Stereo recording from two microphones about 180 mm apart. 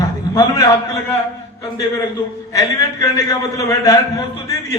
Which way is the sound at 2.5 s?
20° left (ahead or behind).